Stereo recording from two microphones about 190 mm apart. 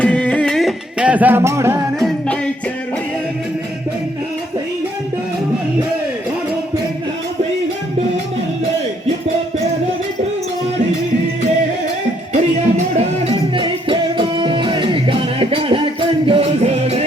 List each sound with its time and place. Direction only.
0.0 s music: 5° left (ahead or behind); by 1.8 s 15° right (ahead or behind)
2.0 s music: centre (ahead or behind)
12.3 s music: 35° right (ahead or behind)